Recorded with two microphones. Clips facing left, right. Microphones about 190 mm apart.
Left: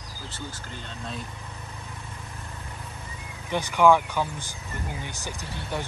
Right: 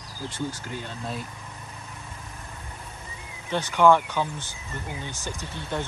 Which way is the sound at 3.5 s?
10° left (ahead or behind).